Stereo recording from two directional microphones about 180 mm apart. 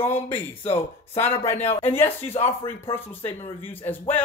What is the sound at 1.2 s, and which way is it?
Speech, 15° left (ahead or behind).